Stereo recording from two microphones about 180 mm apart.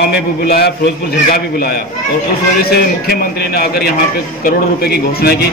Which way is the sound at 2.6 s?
60° left (ahead or behind).